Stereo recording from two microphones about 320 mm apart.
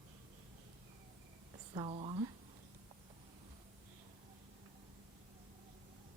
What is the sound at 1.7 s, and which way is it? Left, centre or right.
Speech, centre.